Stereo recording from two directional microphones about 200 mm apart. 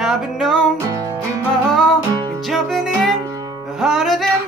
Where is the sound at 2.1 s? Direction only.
20° right (ahead or behind).